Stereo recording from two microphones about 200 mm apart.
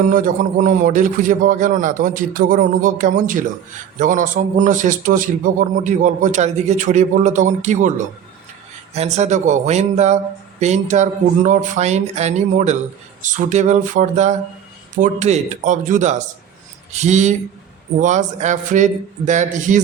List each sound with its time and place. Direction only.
0.1 s a man's voice: 40° right (ahead or behind)